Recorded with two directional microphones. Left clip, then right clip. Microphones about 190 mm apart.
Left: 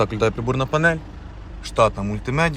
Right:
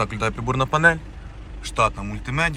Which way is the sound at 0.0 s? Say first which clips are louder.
Left 4 dB; 15° left (ahead or behind).